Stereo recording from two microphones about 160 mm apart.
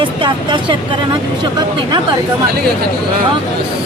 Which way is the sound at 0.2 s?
30° right (ahead or behind).